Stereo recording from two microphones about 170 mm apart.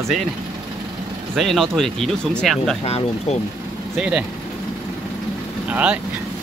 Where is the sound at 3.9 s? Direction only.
5° right (ahead or behind).